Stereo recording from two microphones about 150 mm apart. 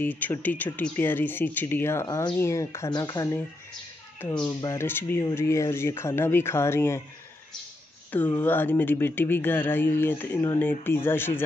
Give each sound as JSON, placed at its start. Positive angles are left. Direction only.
{"t": 0.0, "sound": "speech", "side_deg": 10}
{"t": 8.1, "sound": "speech", "side_deg": 10}